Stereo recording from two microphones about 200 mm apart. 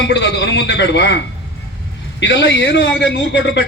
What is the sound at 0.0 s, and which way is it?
A man's voice, 60° left (ahead or behind).